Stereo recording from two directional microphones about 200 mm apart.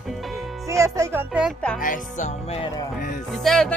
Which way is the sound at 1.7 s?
40° left (ahead or behind).